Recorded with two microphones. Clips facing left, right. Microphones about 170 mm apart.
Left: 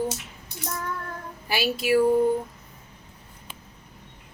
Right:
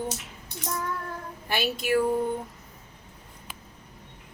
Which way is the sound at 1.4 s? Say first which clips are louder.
Left 3 dB; 5° left (ahead or behind).